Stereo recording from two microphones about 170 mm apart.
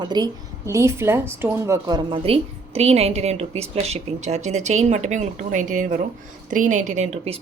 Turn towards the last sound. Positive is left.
turn(degrees=-40)  # may be behind; listen again after turning